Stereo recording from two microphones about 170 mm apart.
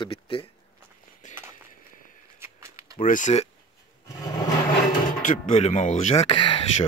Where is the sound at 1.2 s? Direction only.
45° left (ahead or behind).